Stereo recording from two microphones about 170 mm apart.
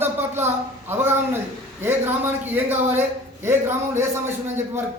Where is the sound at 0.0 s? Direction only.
10° right (ahead or behind).